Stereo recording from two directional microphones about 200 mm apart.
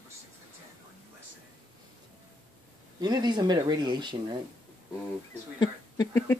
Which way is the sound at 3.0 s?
20° right (ahead or behind).